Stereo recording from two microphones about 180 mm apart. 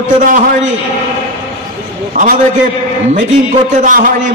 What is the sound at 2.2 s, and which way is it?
Speech, 45° right (ahead or behind).